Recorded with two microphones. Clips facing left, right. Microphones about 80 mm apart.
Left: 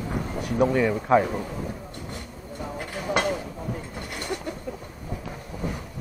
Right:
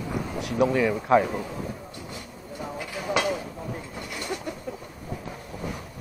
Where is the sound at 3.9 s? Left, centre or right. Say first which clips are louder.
Left 1 dB; left.